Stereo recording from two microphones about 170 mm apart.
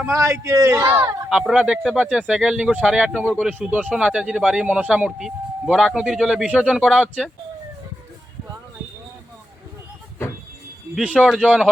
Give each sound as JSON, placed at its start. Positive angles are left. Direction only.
{"t": 0.0, "sound": "a man's voice", "side_deg": -15}
{"t": 1.3, "sound": "speech", "side_deg": -5}
{"t": 10.9, "sound": "speech", "side_deg": -5}